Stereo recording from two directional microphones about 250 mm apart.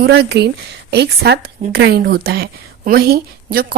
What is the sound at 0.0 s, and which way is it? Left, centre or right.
A woman's voice, right.